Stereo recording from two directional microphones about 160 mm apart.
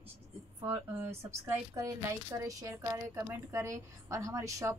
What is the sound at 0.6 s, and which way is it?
A woman's voice, 15° right (ahead or behind).